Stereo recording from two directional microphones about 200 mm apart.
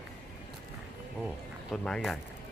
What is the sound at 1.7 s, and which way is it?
Speech, centre (ahead or behind).